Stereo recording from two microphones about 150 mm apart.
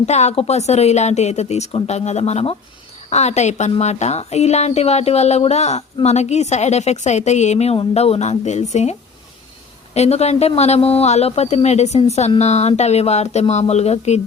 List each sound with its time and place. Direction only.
0.0 s a woman's voice: 50° left (ahead or behind)